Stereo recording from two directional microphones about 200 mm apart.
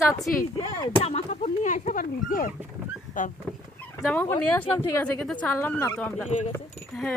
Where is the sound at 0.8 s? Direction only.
30° left (ahead or behind).